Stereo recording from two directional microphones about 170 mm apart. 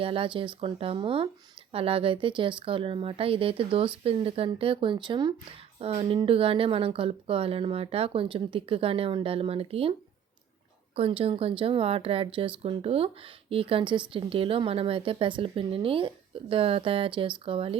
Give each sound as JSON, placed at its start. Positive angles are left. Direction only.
{"t": 0.0, "sound": "speech", "side_deg": -30}
{"t": 10.9, "sound": "speech", "side_deg": -35}